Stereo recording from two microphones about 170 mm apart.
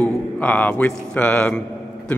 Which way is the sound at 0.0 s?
10° left (ahead or behind).